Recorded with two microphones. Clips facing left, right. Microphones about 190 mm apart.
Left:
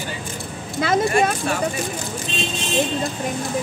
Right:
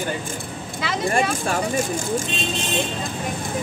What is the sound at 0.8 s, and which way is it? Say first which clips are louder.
Speech: left 8 dB; 45° left (ahead or behind).